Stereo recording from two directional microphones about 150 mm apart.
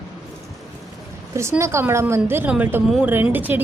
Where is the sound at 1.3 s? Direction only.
20° right (ahead or behind).